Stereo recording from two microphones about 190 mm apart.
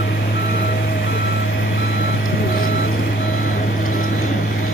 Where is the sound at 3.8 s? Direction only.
45° left (ahead or behind).